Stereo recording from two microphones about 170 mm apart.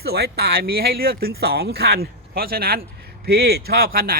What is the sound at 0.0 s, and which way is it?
Speech, 65° right (ahead or behind).